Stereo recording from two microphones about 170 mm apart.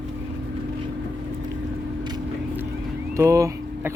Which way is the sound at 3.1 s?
15° right (ahead or behind).